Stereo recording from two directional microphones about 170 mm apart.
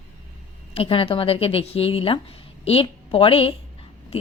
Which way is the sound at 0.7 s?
30° left (ahead or behind).